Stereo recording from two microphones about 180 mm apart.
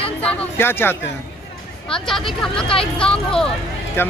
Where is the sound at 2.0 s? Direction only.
Centre (ahead or behind).